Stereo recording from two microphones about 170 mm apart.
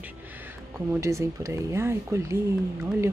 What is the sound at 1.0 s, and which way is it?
Speech, 15° right (ahead or behind).